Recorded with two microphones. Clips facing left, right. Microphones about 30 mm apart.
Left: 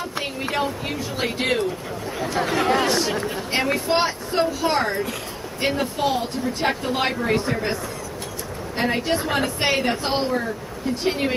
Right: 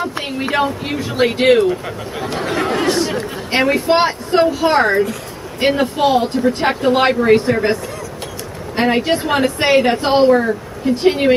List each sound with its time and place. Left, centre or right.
0.2 s speech: right
2.4 s speech: centre
3.2 s speech: right
3.8 s speech: right; by 9.8 s centre
11.0 s speech: right